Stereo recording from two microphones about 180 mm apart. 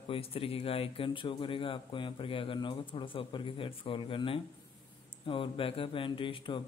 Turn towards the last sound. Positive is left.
turn(degrees=30)  # may be behind; listen again after turning